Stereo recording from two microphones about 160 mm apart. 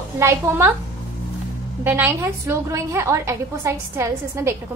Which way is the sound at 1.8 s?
15° right (ahead or behind).